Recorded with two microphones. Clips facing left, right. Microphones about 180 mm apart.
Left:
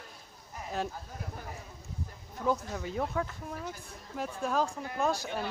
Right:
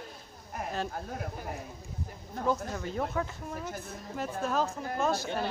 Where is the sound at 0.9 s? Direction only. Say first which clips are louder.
Right 6 dB; 60° right (ahead or behind).